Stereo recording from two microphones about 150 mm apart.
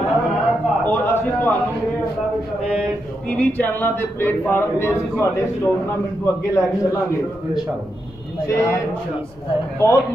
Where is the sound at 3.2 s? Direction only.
10° left (ahead or behind).